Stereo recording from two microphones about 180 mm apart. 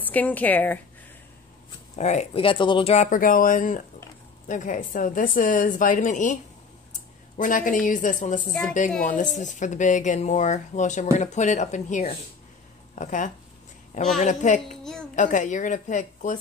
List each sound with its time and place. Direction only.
0.1 s speech: 10° left (ahead or behind)
2.0 s speech: 40° left (ahead or behind)
14.8 s a child's voice: 5° left (ahead or behind)
15.1 s speech: 45° left (ahead or behind)